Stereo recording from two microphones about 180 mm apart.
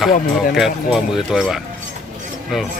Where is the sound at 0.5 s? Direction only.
Centre (ahead or behind).